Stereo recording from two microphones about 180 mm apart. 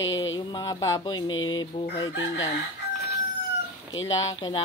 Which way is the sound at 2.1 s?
90° left.